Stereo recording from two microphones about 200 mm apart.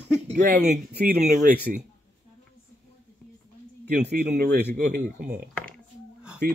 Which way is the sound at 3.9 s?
55° right (ahead or behind).